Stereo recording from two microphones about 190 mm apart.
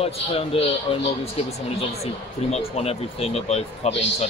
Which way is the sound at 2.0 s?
35° left (ahead or behind).